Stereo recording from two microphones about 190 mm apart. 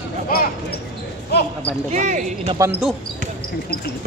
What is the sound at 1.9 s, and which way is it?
Speech, 40° right (ahead or behind).